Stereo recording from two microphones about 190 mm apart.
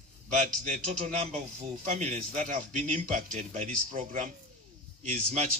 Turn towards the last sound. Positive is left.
turn(degrees=-35)  # may be behind; listen again after turning